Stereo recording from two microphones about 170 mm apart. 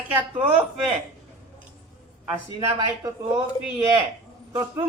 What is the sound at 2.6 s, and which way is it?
Speech, 25° right (ahead or behind).